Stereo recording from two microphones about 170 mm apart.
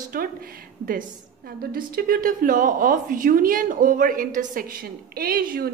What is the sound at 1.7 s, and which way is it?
A woman's voice, 60° right (ahead or behind).